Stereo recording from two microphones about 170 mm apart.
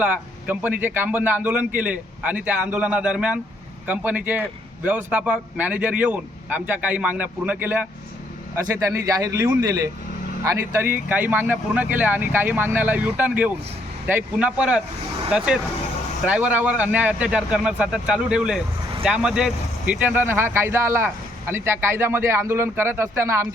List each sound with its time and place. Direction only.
0.0 s speech: 10° right (ahead or behind)